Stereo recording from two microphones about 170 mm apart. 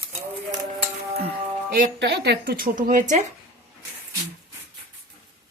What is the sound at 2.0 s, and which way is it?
A woman's voice, 85° right.